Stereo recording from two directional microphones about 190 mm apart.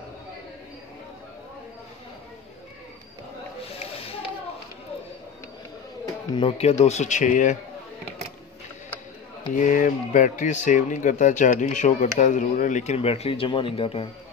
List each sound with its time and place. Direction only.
3.8 s a sound: 30° left (ahead or behind)
6.3 s speech: 30° left (ahead or behind)
9.5 s speech: 45° left (ahead or behind)